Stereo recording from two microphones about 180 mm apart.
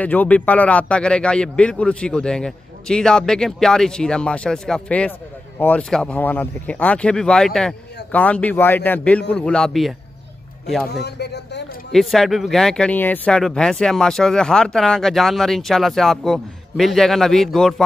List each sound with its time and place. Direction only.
0.0 s speech: 10° left (ahead or behind)
10.9 s speech: 65° left (ahead or behind)
11.9 s speech: centre (ahead or behind)